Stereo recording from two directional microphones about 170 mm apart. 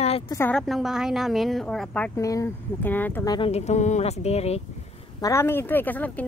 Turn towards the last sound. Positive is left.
turn(degrees=10)  # may be behind; listen again after turning